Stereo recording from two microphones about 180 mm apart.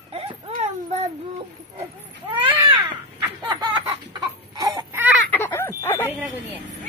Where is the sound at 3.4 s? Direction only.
25° right (ahead or behind).